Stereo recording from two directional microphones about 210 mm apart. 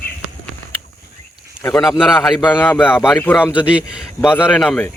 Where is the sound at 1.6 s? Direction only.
15° left (ahead or behind).